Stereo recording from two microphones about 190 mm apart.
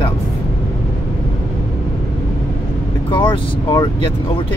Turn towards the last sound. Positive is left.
turn(degrees=25)  # may be behind; listen again after turning